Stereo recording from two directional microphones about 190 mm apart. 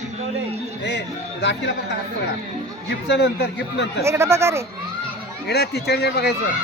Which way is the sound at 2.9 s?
65° left (ahead or behind).